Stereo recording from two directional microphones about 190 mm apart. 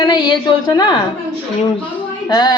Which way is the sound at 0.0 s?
20° left (ahead or behind).